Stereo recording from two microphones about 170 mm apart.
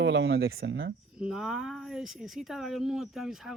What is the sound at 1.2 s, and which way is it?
Speech, 5° right (ahead or behind).